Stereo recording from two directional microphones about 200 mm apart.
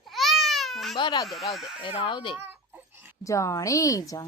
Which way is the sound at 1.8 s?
25° left (ahead or behind).